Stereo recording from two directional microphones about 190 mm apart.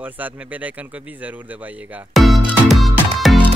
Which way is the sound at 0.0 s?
10° right (ahead or behind).